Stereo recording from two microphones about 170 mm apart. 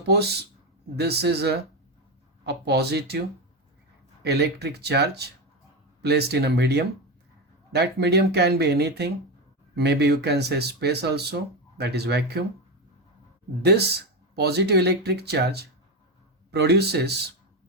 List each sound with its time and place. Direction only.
0.9 s speech: 75° right (ahead or behind)
14.3 s speech: 70° right (ahead or behind)